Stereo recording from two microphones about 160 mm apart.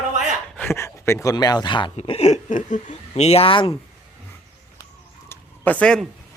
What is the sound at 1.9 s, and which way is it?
Speech, 40° left (ahead or behind).